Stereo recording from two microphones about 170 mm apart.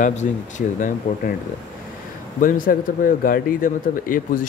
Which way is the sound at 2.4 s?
55° left (ahead or behind).